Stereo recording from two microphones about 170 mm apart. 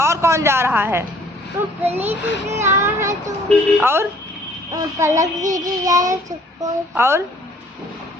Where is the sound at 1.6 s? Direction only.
15° right (ahead or behind).